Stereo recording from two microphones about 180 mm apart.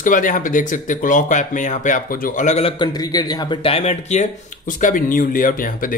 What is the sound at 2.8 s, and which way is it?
Speech, 20° left (ahead or behind).